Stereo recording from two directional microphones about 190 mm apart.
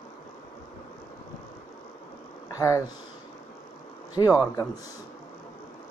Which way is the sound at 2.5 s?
15° left (ahead or behind).